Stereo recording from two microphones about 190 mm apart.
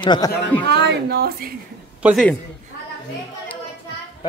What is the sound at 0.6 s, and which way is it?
Speech, 60° right (ahead or behind).